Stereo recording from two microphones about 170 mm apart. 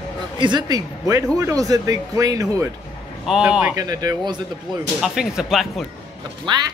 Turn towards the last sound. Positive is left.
turn(degrees=-30)  # may be behind; listen again after turning